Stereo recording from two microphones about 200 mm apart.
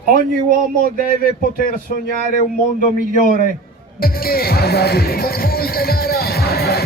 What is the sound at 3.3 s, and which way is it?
Speech, 45° right (ahead or behind).